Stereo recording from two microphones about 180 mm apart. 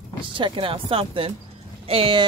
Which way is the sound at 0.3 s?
30° right (ahead or behind).